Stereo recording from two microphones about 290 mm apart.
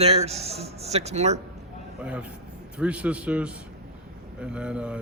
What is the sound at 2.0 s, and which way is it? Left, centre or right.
Speech, centre.